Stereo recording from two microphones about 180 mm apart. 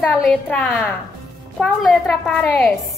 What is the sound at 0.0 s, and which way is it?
A woman's voice, 5° left (ahead or behind).